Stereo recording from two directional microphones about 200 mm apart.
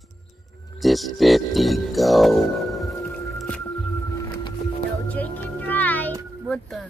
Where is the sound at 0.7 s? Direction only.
Centre (ahead or behind).